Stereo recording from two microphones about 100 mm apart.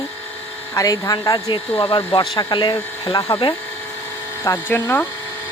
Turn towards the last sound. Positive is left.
turn(degrees=20)  # may be behind; listen again after turning